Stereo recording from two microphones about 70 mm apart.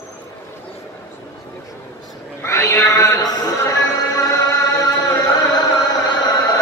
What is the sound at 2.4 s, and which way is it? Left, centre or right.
Music, left.